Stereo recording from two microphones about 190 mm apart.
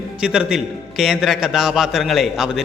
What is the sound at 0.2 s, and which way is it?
A man's voice, 5° right (ahead or behind).